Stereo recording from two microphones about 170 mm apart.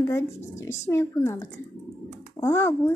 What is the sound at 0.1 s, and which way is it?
A child's voice, 15° left (ahead or behind).